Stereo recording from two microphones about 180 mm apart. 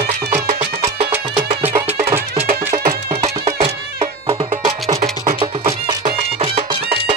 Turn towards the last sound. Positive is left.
turn(degrees=-35)  # may be behind; listen again after turning